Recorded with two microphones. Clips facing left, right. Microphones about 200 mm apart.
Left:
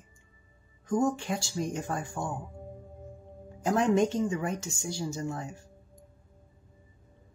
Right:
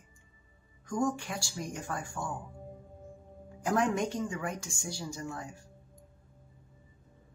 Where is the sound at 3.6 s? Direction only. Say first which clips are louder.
Left 5 dB; 25° left (ahead or behind).